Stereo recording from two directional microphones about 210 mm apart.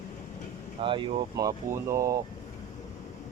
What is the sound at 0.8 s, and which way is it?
Speech, 25° right (ahead or behind).